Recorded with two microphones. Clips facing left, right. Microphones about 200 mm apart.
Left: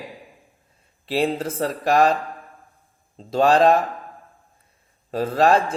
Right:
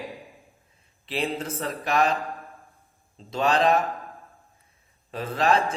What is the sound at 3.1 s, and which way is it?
Speech, 40° left (ahead or behind).